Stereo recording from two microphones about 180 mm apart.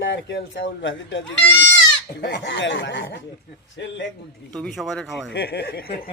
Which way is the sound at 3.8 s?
75° left (ahead or behind).